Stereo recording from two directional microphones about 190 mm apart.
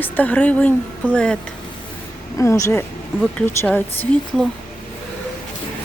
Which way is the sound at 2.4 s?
15° left (ahead or behind).